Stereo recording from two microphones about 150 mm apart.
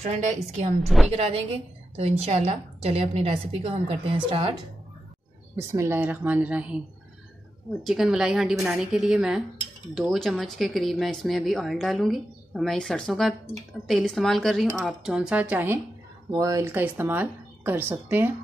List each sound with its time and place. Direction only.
0.0 s a woman's voice: 50° right (ahead or behind)
0.8 s speech: centre (ahead or behind)
1.1 s a woman's voice: 40° right (ahead or behind)
5.6 s speech: 20° right (ahead or behind)
7.8 s speech: centre (ahead or behind)
16.3 s speech: 20° right (ahead or behind)